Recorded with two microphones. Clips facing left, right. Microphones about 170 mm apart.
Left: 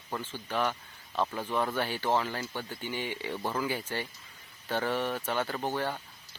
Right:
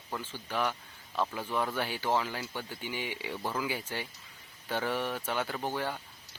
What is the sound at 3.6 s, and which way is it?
Speech, 10° right (ahead or behind).